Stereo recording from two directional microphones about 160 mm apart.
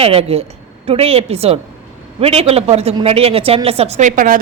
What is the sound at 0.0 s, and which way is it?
A woman's voice, 40° right (ahead or behind).